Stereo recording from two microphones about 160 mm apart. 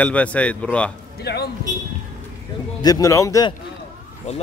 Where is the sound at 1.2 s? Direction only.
90° left.